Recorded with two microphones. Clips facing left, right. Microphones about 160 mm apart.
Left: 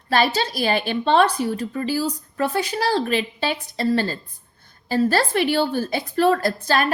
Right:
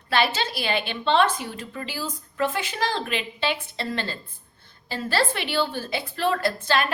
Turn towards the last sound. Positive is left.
turn(degrees=40)  # may be behind; listen again after turning